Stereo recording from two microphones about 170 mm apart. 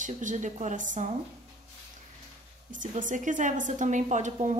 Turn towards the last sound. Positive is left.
turn(degrees=-45)  # may be behind; listen again after turning